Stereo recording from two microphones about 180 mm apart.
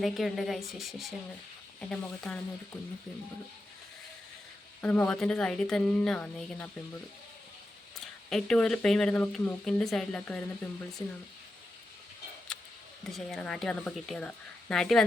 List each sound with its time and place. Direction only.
0.0 s speech: centre (ahead or behind)
4.8 s speech: 10° left (ahead or behind)
8.3 s speech: centre (ahead or behind)
11.0 s speech: 25° left (ahead or behind)
12.5 s a sound: 5° left (ahead or behind)
13.1 s speech: centre (ahead or behind)